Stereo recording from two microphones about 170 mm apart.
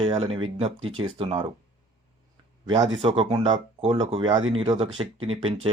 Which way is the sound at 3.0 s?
30° right (ahead or behind).